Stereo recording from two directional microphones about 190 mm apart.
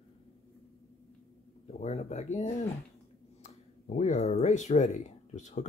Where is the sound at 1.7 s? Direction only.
35° left (ahead or behind).